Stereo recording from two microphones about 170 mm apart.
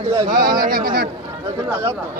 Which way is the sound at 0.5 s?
55° right (ahead or behind).